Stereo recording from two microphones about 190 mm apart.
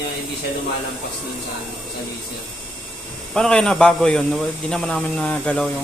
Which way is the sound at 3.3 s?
5° left (ahead or behind).